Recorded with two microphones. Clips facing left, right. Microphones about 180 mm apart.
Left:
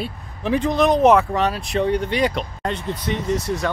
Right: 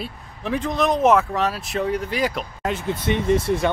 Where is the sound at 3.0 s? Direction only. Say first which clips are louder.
Right 5 dB; 25° right (ahead or behind).